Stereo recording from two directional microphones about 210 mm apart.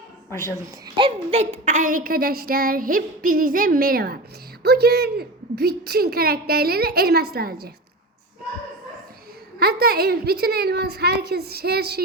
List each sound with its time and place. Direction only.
0.9 s a child's voice: 25° right (ahead or behind)
1.6 s a woman's voice: 35° right (ahead or behind)
9.6 s a woman's voice: 45° right (ahead or behind)